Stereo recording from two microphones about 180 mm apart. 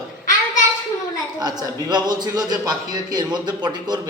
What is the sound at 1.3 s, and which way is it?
A man's voice, 20° right (ahead or behind).